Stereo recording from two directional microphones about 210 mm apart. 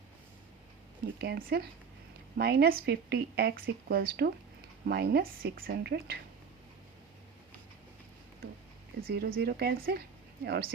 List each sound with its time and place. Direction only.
1.2 s speech: 45° right (ahead or behind)
9.0 s speech: 45° right (ahead or behind)